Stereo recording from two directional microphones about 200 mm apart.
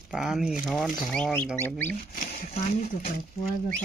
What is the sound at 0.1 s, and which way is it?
Speech, 5° right (ahead or behind).